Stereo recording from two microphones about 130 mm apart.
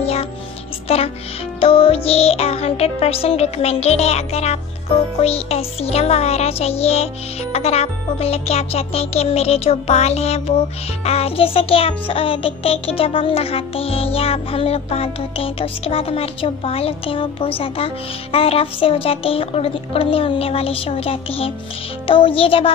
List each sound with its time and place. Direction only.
0.0 s music: 50° left (ahead or behind)